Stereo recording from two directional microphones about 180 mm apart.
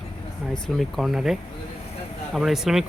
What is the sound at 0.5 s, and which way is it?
Speech, centre (ahead or behind).